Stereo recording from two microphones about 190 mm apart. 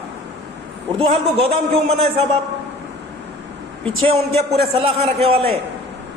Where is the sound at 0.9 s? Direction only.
30° right (ahead or behind).